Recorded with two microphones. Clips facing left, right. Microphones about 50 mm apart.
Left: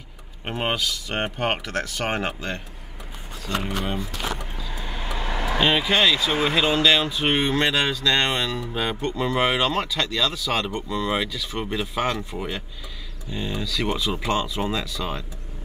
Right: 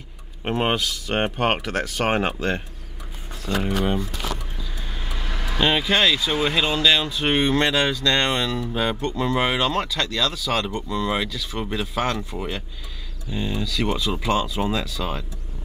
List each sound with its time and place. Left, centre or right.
0.5 s speech: centre
3.6 s speech: centre
5.0 s vehicle: left
5.6 s speech: centre